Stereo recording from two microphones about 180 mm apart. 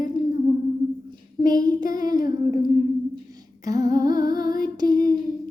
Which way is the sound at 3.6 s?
20° right (ahead or behind).